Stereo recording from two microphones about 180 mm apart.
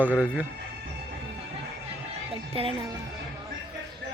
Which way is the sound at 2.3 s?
30° right (ahead or behind).